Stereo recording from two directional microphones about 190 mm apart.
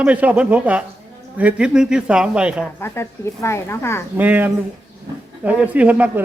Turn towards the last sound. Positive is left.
turn(degrees=-5)  # may be behind; listen again after turning